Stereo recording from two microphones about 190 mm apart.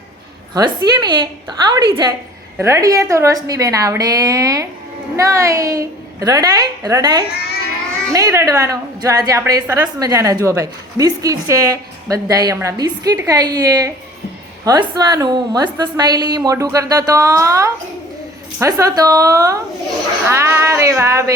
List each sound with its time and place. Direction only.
0.5 s a woman's voice: 20° right (ahead or behind)